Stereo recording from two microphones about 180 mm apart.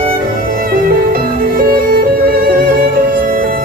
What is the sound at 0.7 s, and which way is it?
Music, 55° right (ahead or behind).